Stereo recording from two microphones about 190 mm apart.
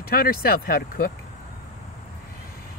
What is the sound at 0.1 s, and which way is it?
Speech, 50° left (ahead or behind).